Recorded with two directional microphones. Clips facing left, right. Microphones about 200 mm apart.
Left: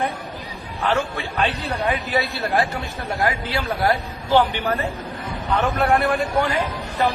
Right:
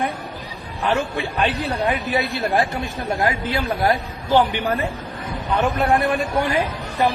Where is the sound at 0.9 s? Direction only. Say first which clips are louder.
Right 1 dB; 15° right (ahead or behind).